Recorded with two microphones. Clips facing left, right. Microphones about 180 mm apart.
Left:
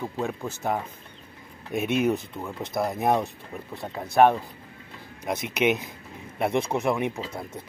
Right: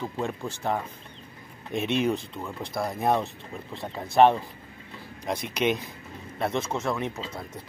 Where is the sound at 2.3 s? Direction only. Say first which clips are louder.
Left 3 dB; 15° left (ahead or behind).